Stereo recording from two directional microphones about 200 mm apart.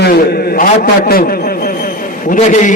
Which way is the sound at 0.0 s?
50° left (ahead or behind).